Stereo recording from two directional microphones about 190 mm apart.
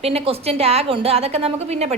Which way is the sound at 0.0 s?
30° right (ahead or behind).